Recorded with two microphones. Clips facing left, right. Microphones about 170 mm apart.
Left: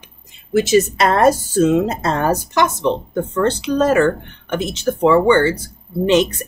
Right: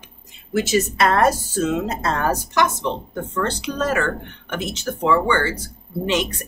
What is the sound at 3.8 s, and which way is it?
Speech, 25° left (ahead or behind).